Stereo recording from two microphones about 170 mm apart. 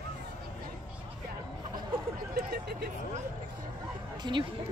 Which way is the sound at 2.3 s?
65° right (ahead or behind).